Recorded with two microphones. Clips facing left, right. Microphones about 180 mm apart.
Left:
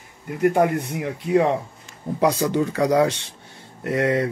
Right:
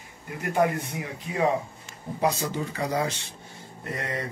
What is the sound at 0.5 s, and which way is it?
Speech, 65° left (ahead or behind).